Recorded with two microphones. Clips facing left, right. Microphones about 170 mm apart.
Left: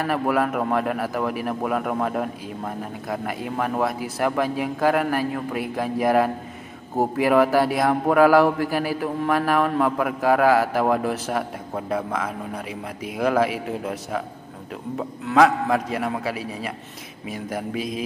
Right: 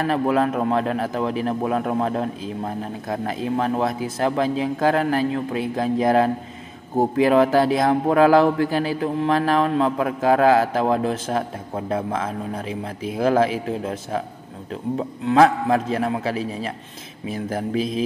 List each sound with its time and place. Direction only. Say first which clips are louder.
0.0 s speech: right 2 dB; 25° right (ahead or behind)
15.2 s speech: right 2 dB; 30° right (ahead or behind)